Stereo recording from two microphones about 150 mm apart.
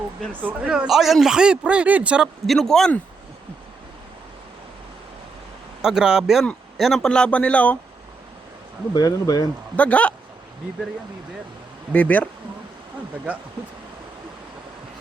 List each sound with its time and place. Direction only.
0.4 s speech: 10° right (ahead or behind)
5.8 s speech: 5° right (ahead or behind)
9.0 s speech: 25° left (ahead or behind)
9.7 s speech: 10° left (ahead or behind)
11.9 s speech: 10° left (ahead or behind)